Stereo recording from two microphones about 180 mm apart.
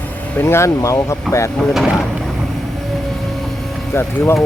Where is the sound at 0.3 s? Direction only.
15° left (ahead or behind).